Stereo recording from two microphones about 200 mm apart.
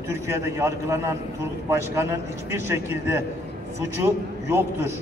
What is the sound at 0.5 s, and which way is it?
Speech, 15° right (ahead or behind).